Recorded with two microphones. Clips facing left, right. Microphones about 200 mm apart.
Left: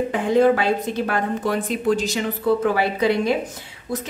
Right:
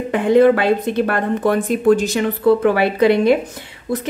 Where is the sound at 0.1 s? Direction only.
65° right (ahead or behind).